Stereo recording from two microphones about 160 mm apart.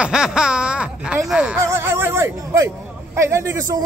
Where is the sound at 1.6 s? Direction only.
15° right (ahead or behind).